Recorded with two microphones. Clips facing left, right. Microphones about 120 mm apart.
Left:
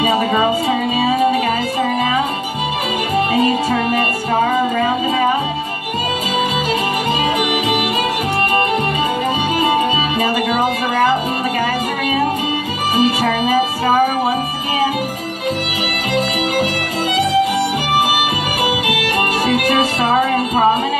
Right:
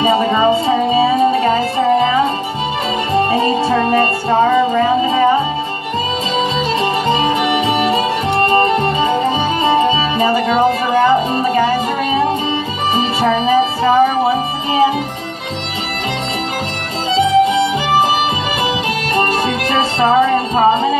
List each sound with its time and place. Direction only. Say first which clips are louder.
0.0 s music: right 3 dB; 25° right (ahead or behind)
7.1 s music: right 3 dB; 30° right (ahead or behind)
17.1 s music: right 4 dB; 25° right (ahead or behind)
18.9 s music: right 2 dB; 30° right (ahead or behind)